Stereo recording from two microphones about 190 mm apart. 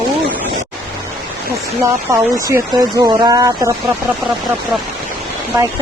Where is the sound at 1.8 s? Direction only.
15° right (ahead or behind).